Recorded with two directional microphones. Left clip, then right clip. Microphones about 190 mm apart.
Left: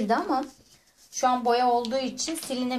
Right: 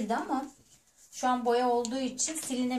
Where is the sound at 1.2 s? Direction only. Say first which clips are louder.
Left 5 dB; 45° left (ahead or behind).